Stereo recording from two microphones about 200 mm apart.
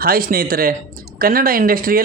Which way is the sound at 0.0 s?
50° right (ahead or behind).